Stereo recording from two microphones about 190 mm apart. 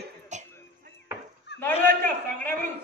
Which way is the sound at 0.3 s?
40° right (ahead or behind).